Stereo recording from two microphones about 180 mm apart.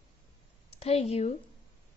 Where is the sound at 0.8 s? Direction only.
35° left (ahead or behind).